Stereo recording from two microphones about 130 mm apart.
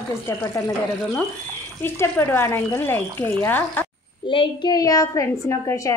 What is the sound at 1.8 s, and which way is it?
A woman's voice, 20° left (ahead or behind).